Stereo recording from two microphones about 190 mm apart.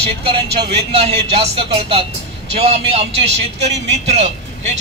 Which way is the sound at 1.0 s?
30° right (ahead or behind).